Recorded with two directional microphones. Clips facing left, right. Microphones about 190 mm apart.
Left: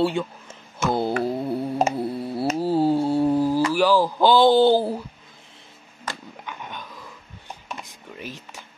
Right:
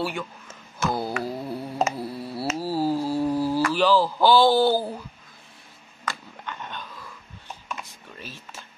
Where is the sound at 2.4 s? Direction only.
25° left (ahead or behind).